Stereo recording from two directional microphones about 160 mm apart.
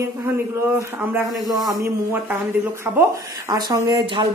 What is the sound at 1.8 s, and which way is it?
Speech, 15° right (ahead or behind).